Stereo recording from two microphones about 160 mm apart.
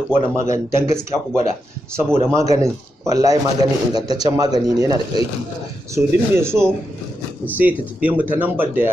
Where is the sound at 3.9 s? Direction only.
25° right (ahead or behind).